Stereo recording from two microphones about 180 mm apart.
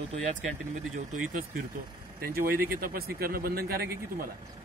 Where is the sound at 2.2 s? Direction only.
55° right (ahead or behind).